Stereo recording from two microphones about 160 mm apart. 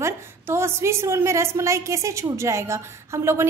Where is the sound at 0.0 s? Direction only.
15° right (ahead or behind).